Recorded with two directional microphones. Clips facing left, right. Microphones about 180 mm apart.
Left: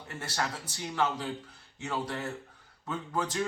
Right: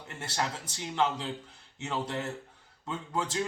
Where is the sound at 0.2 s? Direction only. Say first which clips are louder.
Right 1 dB; 25° right (ahead or behind).